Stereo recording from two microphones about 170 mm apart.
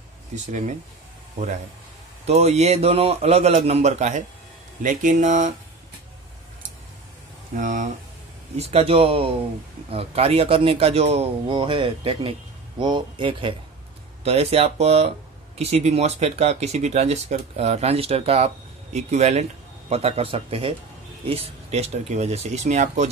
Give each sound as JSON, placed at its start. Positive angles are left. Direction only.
{"t": 0.5, "sound": "speech", "side_deg": -45}
{"t": 2.2, "sound": "speech", "side_deg": -40}
{"t": 7.5, "sound": "speech", "side_deg": -50}
{"t": 8.5, "sound": "speech", "side_deg": -35}